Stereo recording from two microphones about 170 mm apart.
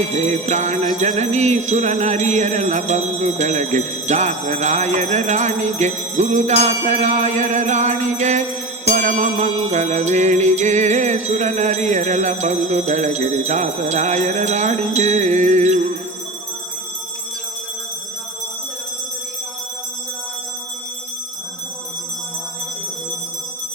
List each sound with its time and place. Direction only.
0.0 s jingle bell: 40° right (ahead or behind)